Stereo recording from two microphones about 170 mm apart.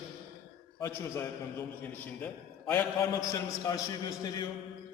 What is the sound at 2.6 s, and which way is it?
Speech, 15° left (ahead or behind).